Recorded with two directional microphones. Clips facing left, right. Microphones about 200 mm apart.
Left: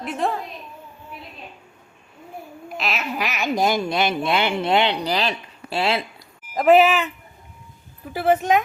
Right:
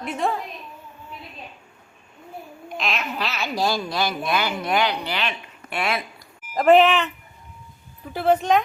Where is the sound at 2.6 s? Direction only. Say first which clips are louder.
Left 1 dB; 5° left (ahead or behind); by 4.9 s 25° left (ahead or behind).